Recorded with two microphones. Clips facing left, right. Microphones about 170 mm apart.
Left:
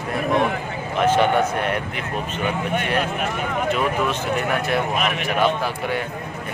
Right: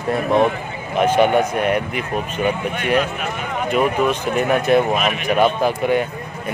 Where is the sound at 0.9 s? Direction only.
15° right (ahead or behind).